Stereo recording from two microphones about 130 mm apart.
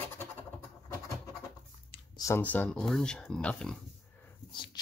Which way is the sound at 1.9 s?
35° left (ahead or behind).